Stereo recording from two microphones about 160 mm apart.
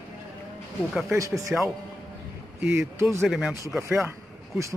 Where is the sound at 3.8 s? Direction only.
15° right (ahead or behind).